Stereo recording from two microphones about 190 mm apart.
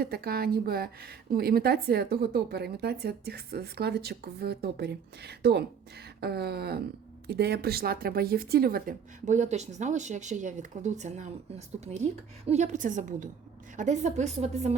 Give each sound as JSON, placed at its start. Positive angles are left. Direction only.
{"t": 0.0, "sound": "a woman's voice", "side_deg": -55}
{"t": 12.5, "sound": "a woman's voice", "side_deg": -35}